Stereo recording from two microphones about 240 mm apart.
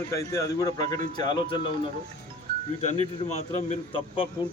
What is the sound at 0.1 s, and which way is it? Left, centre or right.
A man's voice, centre.